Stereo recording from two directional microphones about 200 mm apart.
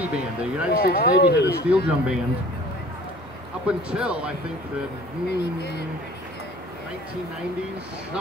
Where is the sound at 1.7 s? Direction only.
5° right (ahead or behind).